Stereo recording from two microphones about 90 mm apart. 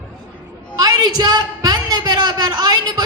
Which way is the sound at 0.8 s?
50° right (ahead or behind).